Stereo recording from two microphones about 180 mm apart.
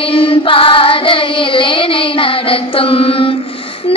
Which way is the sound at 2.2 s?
30° left (ahead or behind).